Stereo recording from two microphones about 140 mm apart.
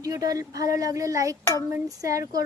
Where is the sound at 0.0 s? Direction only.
25° right (ahead or behind).